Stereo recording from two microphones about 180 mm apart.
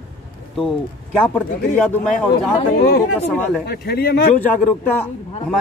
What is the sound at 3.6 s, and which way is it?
Speech, 60° left (ahead or behind).